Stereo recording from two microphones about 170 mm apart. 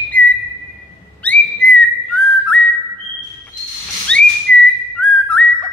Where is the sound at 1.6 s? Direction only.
90° left.